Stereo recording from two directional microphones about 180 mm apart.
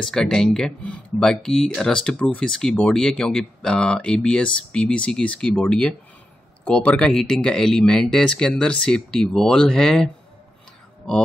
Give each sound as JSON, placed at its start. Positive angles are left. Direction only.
{"t": 0.0, "sound": "speech", "side_deg": 5}